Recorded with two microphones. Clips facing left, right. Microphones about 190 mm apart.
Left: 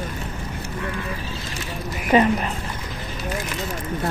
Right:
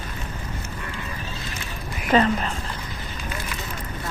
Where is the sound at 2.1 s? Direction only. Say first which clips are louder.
Left 2 dB; 10° left (ahead or behind).